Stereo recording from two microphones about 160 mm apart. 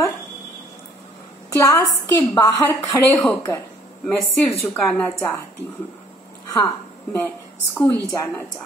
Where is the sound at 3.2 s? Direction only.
10° left (ahead or behind).